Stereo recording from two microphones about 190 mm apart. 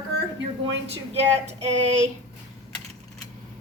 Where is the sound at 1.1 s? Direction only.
35° right (ahead or behind).